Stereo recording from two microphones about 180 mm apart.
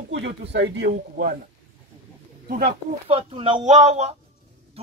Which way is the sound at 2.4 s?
55° right (ahead or behind).